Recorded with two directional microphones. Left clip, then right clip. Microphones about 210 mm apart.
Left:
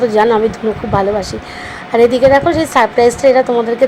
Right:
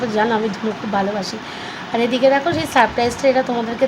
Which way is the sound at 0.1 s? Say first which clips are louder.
Left 7 dB; 15° left (ahead or behind).